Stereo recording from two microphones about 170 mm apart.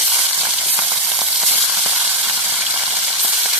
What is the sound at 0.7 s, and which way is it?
Frying, 10° right (ahead or behind).